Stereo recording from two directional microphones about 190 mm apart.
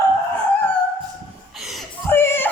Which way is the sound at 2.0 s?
10° left (ahead or behind).